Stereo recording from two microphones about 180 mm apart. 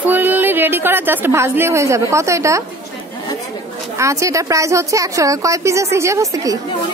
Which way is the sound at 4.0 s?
15° right (ahead or behind).